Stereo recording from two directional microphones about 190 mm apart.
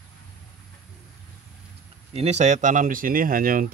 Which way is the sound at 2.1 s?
35° right (ahead or behind).